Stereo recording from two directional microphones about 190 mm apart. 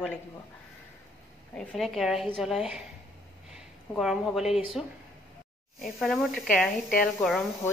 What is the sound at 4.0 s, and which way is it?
A woman's voice, centre (ahead or behind).